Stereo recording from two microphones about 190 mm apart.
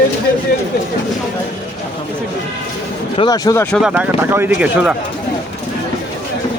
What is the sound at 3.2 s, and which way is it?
Speech, 20° left (ahead or behind).